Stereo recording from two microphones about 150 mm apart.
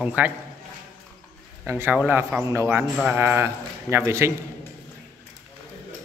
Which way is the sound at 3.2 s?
15° right (ahead or behind).